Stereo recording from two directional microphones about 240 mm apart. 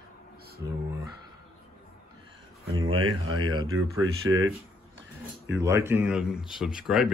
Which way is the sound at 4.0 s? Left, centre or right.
Right.